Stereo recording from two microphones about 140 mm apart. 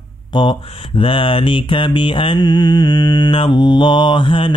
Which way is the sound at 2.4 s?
25° left (ahead or behind).